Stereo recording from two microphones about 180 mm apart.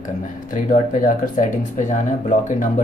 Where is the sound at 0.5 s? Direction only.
45° left (ahead or behind).